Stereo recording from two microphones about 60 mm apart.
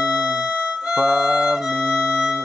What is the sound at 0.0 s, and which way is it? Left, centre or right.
Music, centre.